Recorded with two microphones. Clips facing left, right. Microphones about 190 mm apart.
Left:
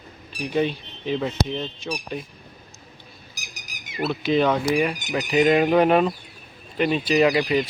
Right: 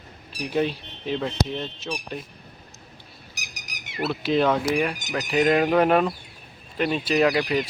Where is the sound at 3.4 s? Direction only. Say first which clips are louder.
Right 2 dB; 70° right (ahead or behind).